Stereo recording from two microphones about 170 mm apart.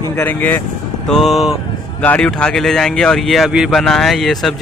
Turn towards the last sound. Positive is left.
turn(degrees=0)  # may be behind; listen again after turning